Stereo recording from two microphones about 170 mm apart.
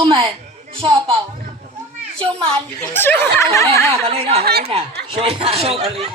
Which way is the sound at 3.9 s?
35° right (ahead or behind).